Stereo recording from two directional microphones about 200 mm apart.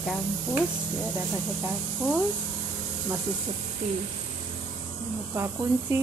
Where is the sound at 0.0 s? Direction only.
5° left (ahead or behind).